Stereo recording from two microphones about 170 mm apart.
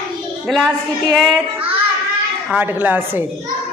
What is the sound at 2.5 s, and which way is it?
Speech, 10° right (ahead or behind).